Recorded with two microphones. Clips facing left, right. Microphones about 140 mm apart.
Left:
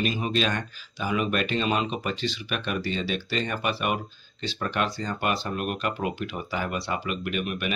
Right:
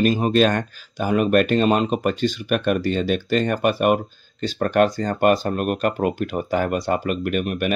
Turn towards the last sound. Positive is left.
turn(degrees=-45)  # may be behind; listen again after turning